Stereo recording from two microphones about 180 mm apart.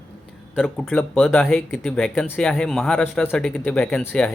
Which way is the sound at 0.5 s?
Centre (ahead or behind).